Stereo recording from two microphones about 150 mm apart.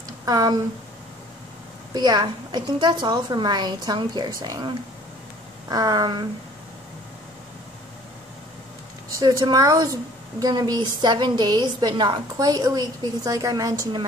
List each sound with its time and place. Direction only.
0.2 s speech: 25° right (ahead or behind)
2.0 s a woman's voice: 30° right (ahead or behind)
9.2 s a woman's voice: 25° right (ahead or behind)